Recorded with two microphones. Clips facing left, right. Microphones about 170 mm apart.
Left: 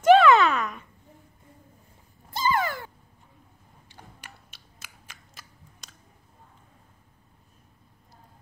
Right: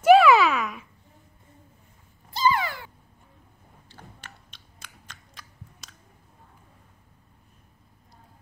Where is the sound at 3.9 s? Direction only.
10° left (ahead or behind).